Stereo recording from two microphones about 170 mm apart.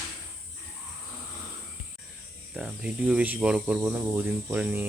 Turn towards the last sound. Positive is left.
turn(degrees=-10)  # may be behind; listen again after turning